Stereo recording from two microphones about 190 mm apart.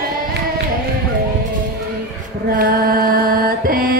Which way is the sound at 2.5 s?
50° right (ahead or behind).